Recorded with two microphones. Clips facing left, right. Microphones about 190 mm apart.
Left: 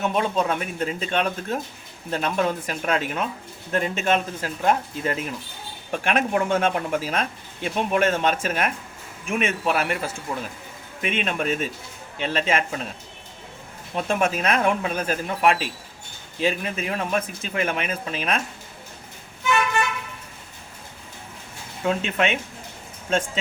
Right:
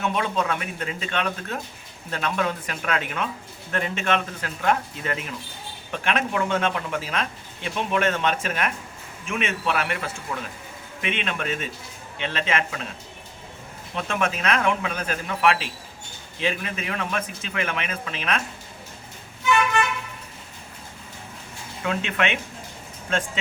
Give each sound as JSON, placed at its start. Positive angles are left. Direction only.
{"t": 0.0, "sound": "speech", "side_deg": 45}
{"t": 13.9, "sound": "speech", "side_deg": 40}
{"t": 21.8, "sound": "speech", "side_deg": 40}